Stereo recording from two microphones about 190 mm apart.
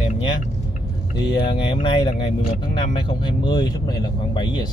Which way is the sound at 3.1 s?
25° left (ahead or behind).